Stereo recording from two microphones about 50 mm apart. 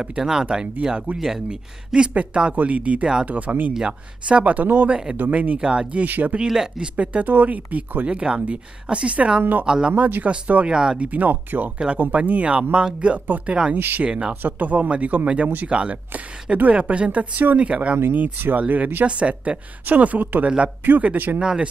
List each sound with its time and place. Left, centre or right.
0.0 s a woman's voice: centre; by 5.6 s right
5.6 s a woman's voice: centre; by 6.3 s right
6.4 s speech: centre
7.0 s a woman's voice: right
8.1 s a woman's voice: centre; by 9.7 s right
9.7 s speech: centre
9.9 s a woman's voice: right; by 11.1 s centre
11.1 s a woman's voice: right
13.7 s speech: right
14.0 s a woman's voice: right
14.3 s a woman's voice: right
17.9 s a woman's voice: right
21.4 s speech: centre